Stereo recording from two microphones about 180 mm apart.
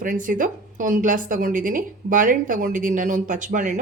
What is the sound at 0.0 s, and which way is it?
A woman's voice, 50° right (ahead or behind).